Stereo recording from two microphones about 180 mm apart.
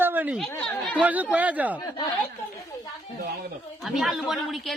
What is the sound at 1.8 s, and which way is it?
Speech, 25° left (ahead or behind).